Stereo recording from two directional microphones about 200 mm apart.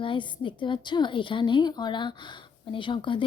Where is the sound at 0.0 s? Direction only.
25° left (ahead or behind).